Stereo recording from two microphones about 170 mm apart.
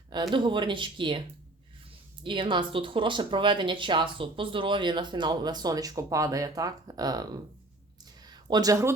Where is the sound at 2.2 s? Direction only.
30° right (ahead or behind).